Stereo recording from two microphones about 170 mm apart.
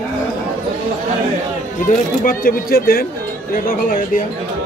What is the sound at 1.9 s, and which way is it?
Speech, 55° left (ahead or behind).